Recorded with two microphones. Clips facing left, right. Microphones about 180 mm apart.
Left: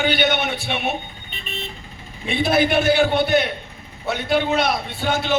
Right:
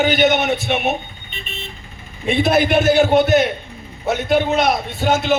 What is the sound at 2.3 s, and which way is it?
A man's voice, 45° right (ahead or behind).